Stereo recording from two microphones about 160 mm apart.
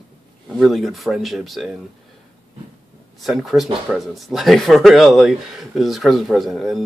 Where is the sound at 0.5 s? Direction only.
Centre (ahead or behind).